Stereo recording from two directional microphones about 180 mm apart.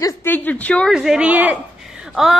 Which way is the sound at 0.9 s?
5° right (ahead or behind).